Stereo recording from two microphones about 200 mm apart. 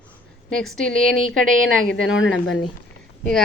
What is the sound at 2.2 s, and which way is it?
Speech, 75° left (ahead or behind).